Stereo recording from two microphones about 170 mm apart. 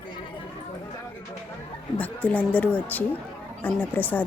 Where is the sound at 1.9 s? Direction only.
10° left (ahead or behind).